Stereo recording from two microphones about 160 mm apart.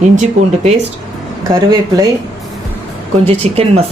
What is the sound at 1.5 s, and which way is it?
Speech, 20° right (ahead or behind).